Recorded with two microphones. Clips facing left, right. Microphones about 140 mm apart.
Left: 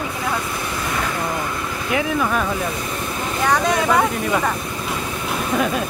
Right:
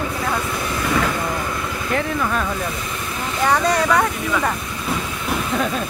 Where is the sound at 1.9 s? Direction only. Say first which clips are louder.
Left 2 dB; 5° left (ahead or behind).